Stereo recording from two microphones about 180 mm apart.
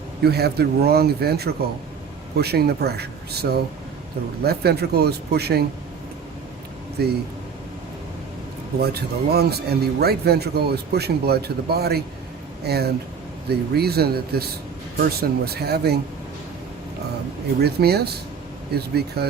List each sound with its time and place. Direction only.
0.2 s speech: 60° right (ahead or behind)
8.8 s speech: 60° right (ahead or behind)
17.6 s speech: 65° right (ahead or behind)